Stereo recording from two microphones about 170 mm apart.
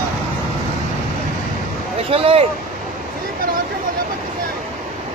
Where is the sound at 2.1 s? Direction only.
35° right (ahead or behind).